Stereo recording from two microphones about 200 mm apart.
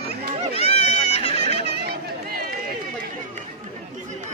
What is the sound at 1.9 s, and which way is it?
Chatter, 50° right (ahead or behind).